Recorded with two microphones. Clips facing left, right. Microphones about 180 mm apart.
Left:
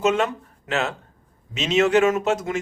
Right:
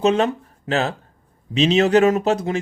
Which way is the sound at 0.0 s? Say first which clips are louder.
Right 3 dB; 35° right (ahead or behind).